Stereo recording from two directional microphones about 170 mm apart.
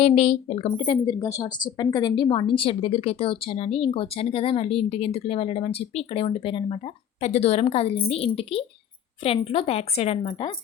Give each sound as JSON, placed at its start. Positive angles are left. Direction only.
{"t": 0.0, "sound": "speech", "side_deg": 35}